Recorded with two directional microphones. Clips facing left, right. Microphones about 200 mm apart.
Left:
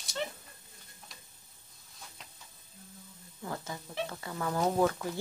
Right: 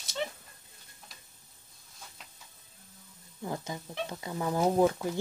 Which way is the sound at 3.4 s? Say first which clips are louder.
Right 3 dB; 15° right (ahead or behind).